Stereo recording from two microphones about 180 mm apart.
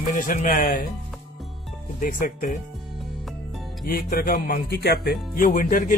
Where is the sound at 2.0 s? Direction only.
50° left (ahead or behind).